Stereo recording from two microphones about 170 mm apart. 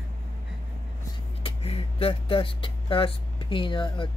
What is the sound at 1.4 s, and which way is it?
Speech, 35° left (ahead or behind).